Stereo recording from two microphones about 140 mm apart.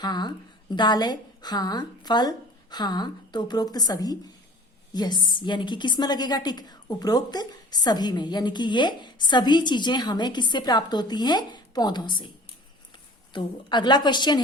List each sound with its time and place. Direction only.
0.0 s a woman's voice: 30° left (ahead or behind)
13.3 s a woman's voice: 35° left (ahead or behind)